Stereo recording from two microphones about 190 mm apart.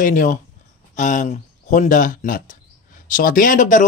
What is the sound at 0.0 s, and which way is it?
Speech, 45° left (ahead or behind).